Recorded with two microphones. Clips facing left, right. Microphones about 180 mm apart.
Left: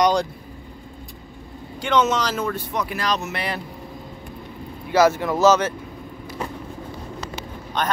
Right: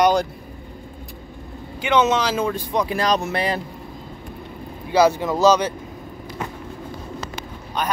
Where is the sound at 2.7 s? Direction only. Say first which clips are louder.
Right 6 dB; 30° right (ahead or behind).